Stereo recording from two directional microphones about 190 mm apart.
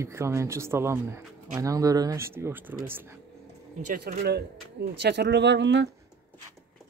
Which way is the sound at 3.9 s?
55° right (ahead or behind).